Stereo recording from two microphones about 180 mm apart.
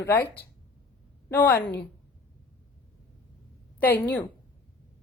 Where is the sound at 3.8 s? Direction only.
10° left (ahead or behind).